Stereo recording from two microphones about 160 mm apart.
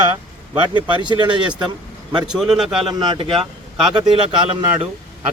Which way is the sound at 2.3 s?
Centre (ahead or behind).